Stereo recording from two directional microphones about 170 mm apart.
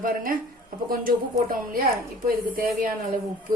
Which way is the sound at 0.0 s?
55° right (ahead or behind).